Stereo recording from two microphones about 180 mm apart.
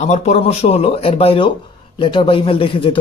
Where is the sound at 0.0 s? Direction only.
40° left (ahead or behind).